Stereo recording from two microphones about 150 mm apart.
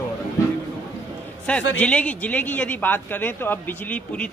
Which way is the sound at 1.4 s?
10° left (ahead or behind).